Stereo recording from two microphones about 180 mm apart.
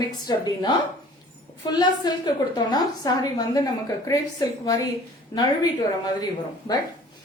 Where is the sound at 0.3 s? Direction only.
20° left (ahead or behind).